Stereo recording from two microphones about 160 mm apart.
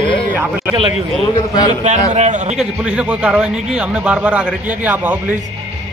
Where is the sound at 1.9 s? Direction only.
45° right (ahead or behind).